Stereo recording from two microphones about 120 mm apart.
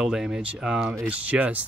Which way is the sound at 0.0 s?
5° right (ahead or behind).